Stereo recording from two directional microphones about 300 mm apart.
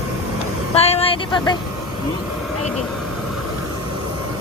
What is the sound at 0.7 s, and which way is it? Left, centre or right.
Vehicle, centre.